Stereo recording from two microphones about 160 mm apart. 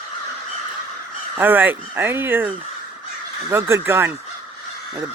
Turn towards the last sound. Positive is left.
turn(degrees=-15)  # may be behind; listen again after turning